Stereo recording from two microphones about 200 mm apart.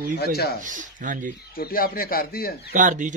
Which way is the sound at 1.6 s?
45° left (ahead or behind).